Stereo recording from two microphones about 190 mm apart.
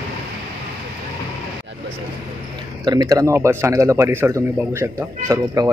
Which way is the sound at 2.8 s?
20° right (ahead or behind).